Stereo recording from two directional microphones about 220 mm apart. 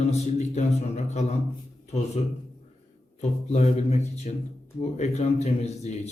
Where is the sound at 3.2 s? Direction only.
30° left (ahead or behind).